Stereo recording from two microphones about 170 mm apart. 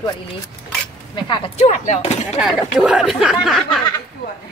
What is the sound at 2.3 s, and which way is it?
Speech, 5° right (ahead or behind).